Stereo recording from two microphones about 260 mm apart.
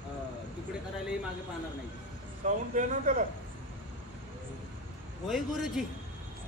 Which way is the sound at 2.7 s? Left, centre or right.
Right.